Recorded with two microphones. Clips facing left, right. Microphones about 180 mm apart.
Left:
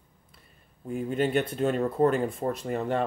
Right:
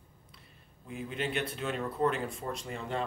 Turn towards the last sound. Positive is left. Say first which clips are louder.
# left 8 dB
turn(degrees=60)  # may be behind; listen again after turning